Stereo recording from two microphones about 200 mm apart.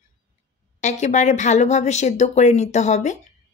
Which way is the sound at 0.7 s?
35° left (ahead or behind).